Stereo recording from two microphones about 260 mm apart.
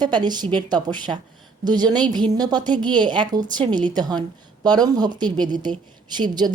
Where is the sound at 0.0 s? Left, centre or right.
Centre.